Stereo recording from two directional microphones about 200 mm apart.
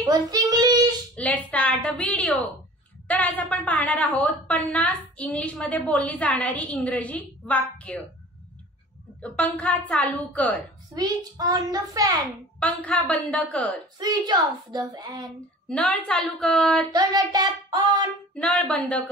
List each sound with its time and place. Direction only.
0.0 s child singing: 20° right (ahead or behind)
1.1 s a woman's voice: 5° left (ahead or behind)
9.2 s a woman's voice: 5° left (ahead or behind)
11.0 s speech: 20° right (ahead or behind)
12.5 s a woman's voice: 5° left (ahead or behind)
13.9 s speech: 20° right (ahead or behind)
15.7 s a woman's voice: 5° left (ahead or behind)
16.9 s speech: 20° right (ahead or behind)
18.3 s a woman's voice: 5° left (ahead or behind)